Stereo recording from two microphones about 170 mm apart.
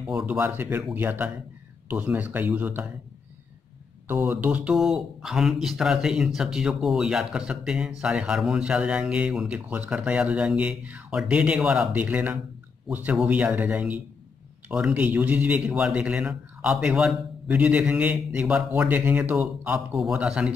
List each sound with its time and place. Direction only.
0.0 s a man's voice: 5° right (ahead or behind)
4.1 s a man's voice: 10° right (ahead or behind)